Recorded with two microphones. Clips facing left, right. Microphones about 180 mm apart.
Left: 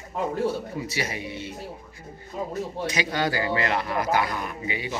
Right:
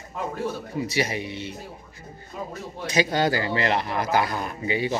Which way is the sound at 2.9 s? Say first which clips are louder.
Right 6 dB; 30° right (ahead or behind).